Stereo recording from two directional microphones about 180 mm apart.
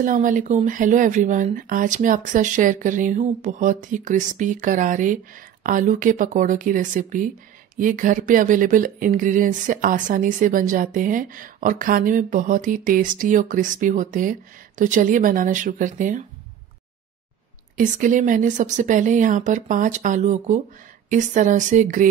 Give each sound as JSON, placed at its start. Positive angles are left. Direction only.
{"t": 0.0, "sound": "speech", "side_deg": -45}
{"t": 17.7, "sound": "speech", "side_deg": -45}